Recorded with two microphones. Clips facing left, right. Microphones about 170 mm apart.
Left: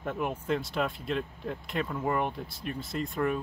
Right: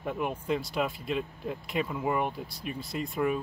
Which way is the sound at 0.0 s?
5° right (ahead or behind).